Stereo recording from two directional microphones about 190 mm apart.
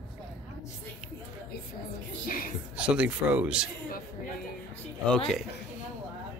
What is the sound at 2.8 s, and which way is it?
Speech, 5° right (ahead or behind).